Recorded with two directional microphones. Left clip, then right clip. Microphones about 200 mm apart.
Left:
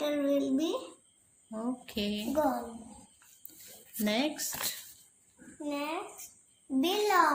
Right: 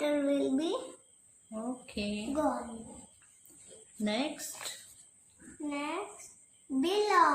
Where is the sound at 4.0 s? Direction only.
25° left (ahead or behind).